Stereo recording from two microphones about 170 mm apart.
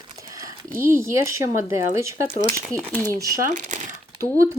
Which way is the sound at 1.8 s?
15° right (ahead or behind).